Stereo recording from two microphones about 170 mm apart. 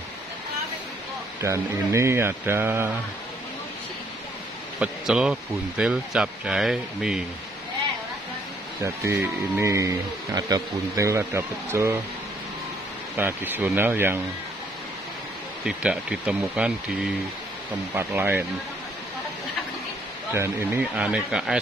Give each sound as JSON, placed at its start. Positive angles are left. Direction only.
{"t": 1.4, "sound": "speech", "side_deg": -15}
{"t": 4.7, "sound": "speech", "side_deg": -5}
{"t": 8.8, "sound": "speech", "side_deg": -15}
{"t": 13.1, "sound": "speech", "side_deg": -10}
{"t": 15.6, "sound": "speech", "side_deg": -5}
{"t": 20.3, "sound": "speech", "side_deg": -15}